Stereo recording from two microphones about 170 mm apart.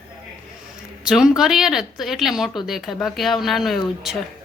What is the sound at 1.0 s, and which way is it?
A woman's voice, 5° right (ahead or behind).